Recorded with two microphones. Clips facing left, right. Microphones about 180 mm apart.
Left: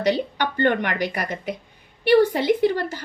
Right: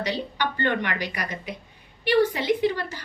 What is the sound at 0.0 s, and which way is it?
A woman's voice, 50° left (ahead or behind).